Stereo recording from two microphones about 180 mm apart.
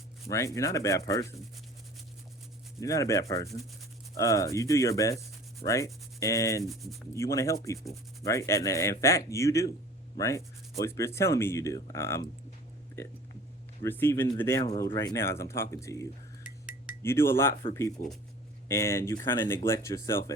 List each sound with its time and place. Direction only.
0.3 s speech: 15° left (ahead or behind)
2.8 s speech: 15° left (ahead or behind)
6.7 s speech: centre (ahead or behind)
7.1 s speech: 15° left (ahead or behind)
18.0 s speech: 50° left (ahead or behind)
18.7 s speech: 15° left (ahead or behind)